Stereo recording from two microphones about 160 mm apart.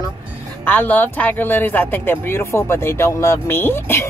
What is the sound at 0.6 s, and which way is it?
A woman's voice, 10° left (ahead or behind).